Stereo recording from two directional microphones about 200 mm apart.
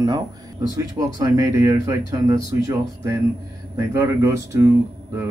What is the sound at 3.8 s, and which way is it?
Speech, 15° right (ahead or behind).